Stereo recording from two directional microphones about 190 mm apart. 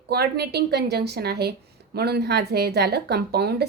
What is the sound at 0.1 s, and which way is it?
A woman's voice, 55° right (ahead or behind).